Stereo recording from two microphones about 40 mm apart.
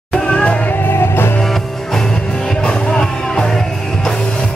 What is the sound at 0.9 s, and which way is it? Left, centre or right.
Music, left.